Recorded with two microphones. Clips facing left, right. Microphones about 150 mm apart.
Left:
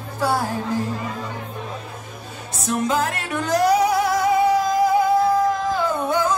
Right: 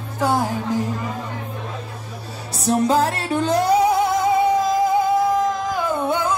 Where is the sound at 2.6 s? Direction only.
35° right (ahead or behind).